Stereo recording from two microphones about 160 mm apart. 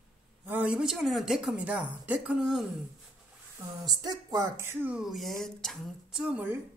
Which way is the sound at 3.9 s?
25° right (ahead or behind).